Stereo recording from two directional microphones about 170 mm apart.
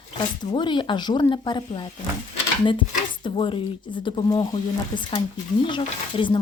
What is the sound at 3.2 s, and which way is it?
Speech, 30° left (ahead or behind).